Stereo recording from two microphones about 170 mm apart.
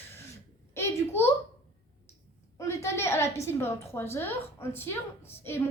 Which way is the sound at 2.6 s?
15° left (ahead or behind).